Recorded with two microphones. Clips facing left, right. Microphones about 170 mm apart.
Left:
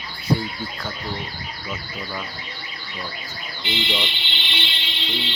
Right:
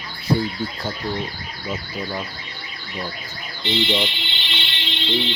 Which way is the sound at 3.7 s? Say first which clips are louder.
Right 5 dB; 20° right (ahead or behind).